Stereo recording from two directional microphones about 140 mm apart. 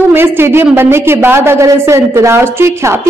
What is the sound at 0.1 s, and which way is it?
A woman's voice, 15° right (ahead or behind).